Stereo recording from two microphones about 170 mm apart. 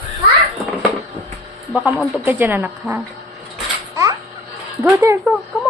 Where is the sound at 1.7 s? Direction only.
5° right (ahead or behind).